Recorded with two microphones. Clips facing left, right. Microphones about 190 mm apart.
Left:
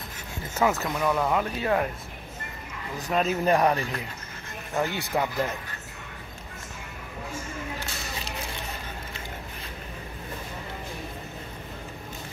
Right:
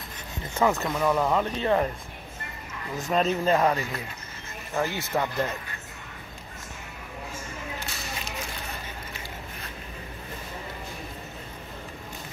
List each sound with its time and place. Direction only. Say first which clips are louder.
0.6 s speech: right 1 dB; 5° left (ahead or behind)
3.1 s speech: right 1 dB; 5° left (ahead or behind)
3.4 s speech: left 2 dB; 15° left (ahead or behind)
3.7 s speech: left 1 dB; 15° right (ahead or behind)
5.0 s speech: even; 15° left (ahead or behind)